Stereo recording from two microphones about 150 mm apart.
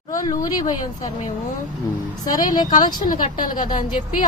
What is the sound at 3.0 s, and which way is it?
A woman's voice, 65° left (ahead or behind).